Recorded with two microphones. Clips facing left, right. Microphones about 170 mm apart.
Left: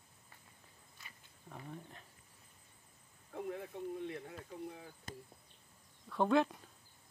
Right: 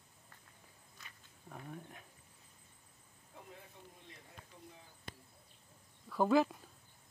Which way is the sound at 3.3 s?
65° left (ahead or behind).